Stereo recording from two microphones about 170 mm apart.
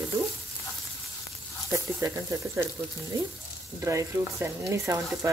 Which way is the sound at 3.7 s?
15° right (ahead or behind).